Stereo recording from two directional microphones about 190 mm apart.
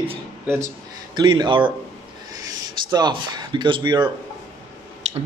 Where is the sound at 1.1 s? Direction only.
25° right (ahead or behind).